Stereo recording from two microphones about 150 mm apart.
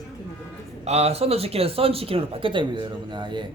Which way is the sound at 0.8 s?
45° right (ahead or behind).